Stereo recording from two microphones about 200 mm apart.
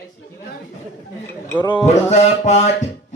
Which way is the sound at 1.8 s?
35° left (ahead or behind).